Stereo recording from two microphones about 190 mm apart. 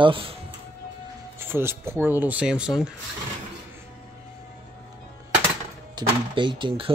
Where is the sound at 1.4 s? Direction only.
10° right (ahead or behind).